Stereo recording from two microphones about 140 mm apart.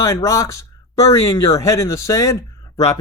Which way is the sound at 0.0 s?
25° left (ahead or behind).